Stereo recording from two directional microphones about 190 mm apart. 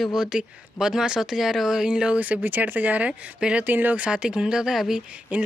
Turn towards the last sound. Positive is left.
turn(degrees=-5)  # may be behind; listen again after turning